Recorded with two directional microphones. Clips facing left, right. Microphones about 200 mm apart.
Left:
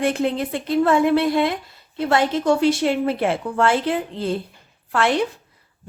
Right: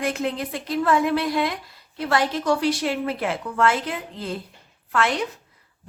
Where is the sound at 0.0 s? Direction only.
30° left (ahead or behind).